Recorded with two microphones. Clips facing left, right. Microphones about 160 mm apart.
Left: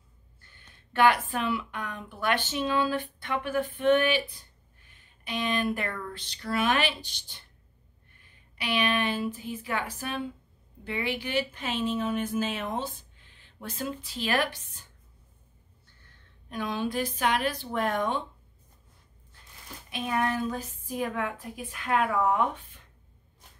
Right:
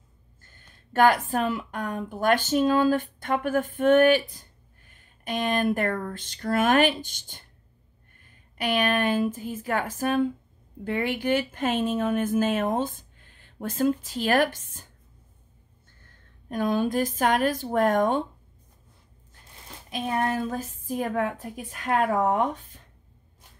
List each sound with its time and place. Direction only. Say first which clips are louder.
0.4 s a woman's voice: right 2 dB; 45° right (ahead or behind)
16.0 s a woman's voice: right 3 dB; 45° right (ahead or behind)
19.9 s a woman's voice: right 2 dB; 40° right (ahead or behind)